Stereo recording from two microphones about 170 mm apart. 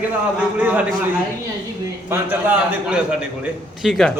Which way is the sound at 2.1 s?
10° right (ahead or behind).